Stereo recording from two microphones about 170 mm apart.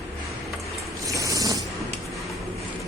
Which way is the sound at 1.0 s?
20° right (ahead or behind).